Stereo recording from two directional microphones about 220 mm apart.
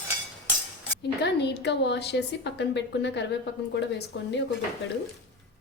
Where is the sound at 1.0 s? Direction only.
50° left (ahead or behind).